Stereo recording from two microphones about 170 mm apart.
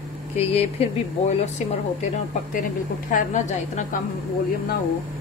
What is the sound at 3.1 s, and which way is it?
Speech, 45° left (ahead or behind).